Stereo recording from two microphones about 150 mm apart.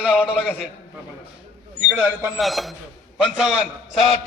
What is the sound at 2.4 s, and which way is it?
A man's voice, centre (ahead or behind).